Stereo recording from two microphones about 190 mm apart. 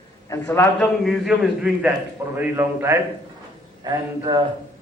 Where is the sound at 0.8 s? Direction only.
Centre (ahead or behind); by 4.4 s 20° right (ahead or behind).